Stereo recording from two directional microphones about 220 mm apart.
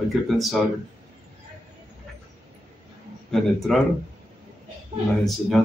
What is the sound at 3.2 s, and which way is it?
Speech, centre (ahead or behind).